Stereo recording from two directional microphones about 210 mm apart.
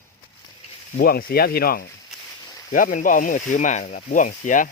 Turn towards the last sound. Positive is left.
turn(degrees=40)  # may be behind; listen again after turning